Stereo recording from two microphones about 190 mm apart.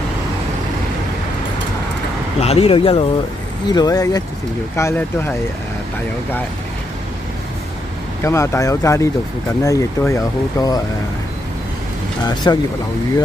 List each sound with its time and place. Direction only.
2.4 s speech: 30° left (ahead or behind); by 5.3 s 15° left (ahead or behind)
8.2 s speech: 15° left (ahead or behind)
12.4 s speech: 20° left (ahead or behind)